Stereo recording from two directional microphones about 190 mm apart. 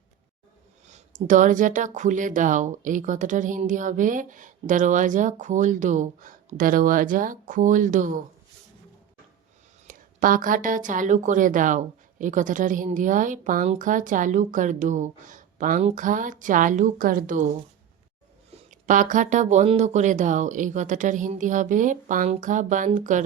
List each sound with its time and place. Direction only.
0.9 s speech: 40° right (ahead or behind)
9.8 s a woman's voice: 45° right (ahead or behind)
18.7 s speech: 40° right (ahead or behind)